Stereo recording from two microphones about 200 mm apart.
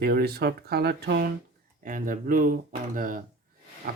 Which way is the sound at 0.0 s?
50° right (ahead or behind).